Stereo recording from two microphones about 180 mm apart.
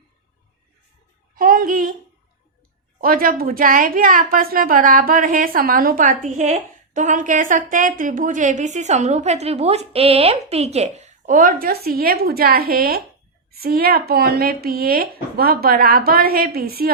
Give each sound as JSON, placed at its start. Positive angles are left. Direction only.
{"t": 1.4, "sound": "a child's voice", "side_deg": -50}
{"t": 3.0, "sound": "a woman's voice", "side_deg": -50}